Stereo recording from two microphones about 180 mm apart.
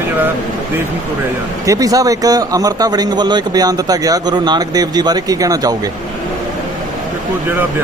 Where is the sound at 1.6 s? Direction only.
20° right (ahead or behind).